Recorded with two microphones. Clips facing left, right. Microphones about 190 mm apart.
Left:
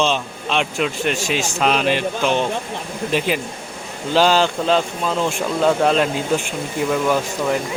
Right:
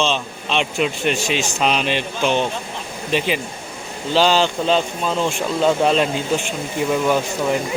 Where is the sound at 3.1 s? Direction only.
45° left (ahead or behind).